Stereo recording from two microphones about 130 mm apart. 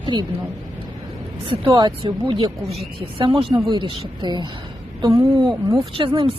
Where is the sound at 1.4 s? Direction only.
40° right (ahead or behind).